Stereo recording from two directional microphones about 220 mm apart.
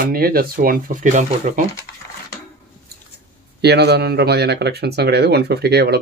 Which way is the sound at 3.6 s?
50° right (ahead or behind).